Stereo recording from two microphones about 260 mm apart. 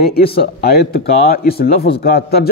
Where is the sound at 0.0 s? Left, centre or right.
Left.